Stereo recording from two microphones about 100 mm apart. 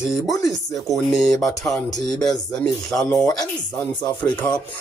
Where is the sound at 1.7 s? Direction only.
40° left (ahead or behind).